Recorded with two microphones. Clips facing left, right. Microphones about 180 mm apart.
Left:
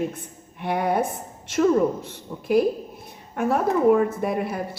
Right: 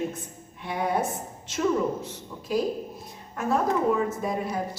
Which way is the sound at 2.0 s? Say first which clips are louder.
Left 7 dB; 60° left (ahead or behind).